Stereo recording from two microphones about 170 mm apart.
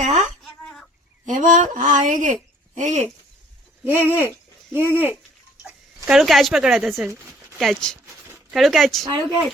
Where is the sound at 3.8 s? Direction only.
10° right (ahead or behind).